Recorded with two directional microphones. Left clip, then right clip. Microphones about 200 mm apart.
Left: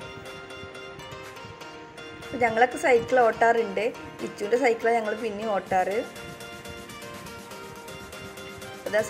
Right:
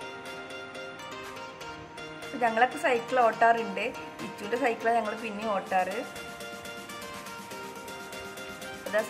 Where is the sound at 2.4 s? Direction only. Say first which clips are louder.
Left 3 dB; 10° left (ahead or behind).